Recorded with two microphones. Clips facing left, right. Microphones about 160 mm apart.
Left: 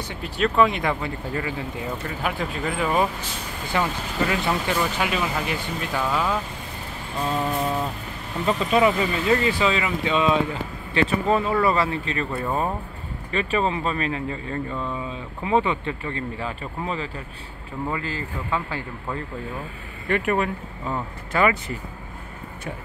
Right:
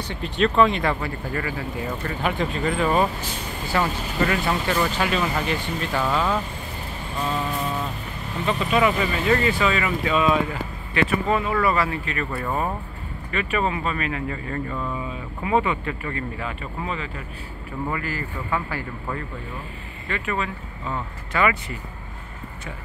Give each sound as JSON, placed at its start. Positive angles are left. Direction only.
{"t": 0.1, "sound": "speech", "side_deg": 10}
{"t": 2.0, "sound": "speech", "side_deg": 5}
{"t": 8.5, "sound": "speech", "side_deg": 30}
{"t": 13.3, "sound": "speech", "side_deg": 30}
{"t": 14.7, "sound": "speech", "side_deg": -5}
{"t": 15.4, "sound": "speech", "side_deg": 30}
{"t": 17.9, "sound": "speech", "side_deg": 20}
{"t": 20.1, "sound": "speech", "side_deg": 55}
{"t": 21.3, "sound": "speech", "side_deg": 40}